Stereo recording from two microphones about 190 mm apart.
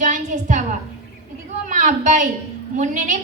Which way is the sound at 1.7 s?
40° right (ahead or behind).